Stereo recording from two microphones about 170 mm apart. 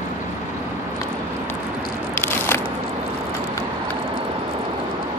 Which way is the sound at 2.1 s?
15° left (ahead or behind).